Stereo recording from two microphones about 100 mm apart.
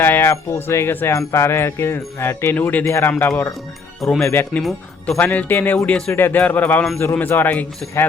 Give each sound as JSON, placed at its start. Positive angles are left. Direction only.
{"t": 0.0, "sound": "speech", "side_deg": 25}
{"t": 4.0, "sound": "speech", "side_deg": 0}
{"t": 4.3, "sound": "speech", "side_deg": 20}